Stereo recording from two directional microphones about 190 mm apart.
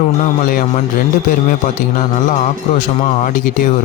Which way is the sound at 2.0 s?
40° left (ahead or behind).